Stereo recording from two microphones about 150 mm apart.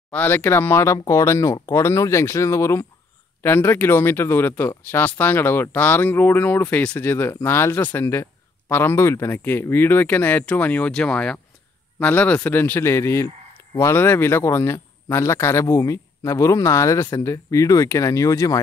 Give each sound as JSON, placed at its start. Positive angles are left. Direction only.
{"t": 0.1, "sound": "speech", "side_deg": 10}